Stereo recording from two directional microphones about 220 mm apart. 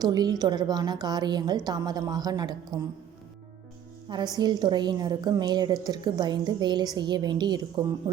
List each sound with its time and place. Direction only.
0.0 s a woman's voice: 15° right (ahead or behind)
4.1 s a woman's voice: 20° right (ahead or behind)